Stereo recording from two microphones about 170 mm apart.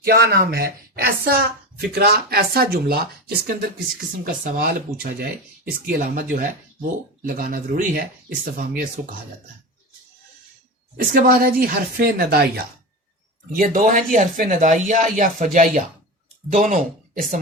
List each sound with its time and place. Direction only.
0.0 s a woman's voice: 60° right (ahead or behind)
11.1 s a woman's voice: 55° right (ahead or behind)
13.5 s speech: 50° right (ahead or behind)